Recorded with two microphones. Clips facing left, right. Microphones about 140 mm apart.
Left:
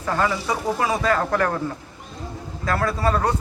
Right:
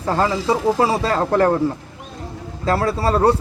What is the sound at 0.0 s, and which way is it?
A man's voice, 30° right (ahead or behind).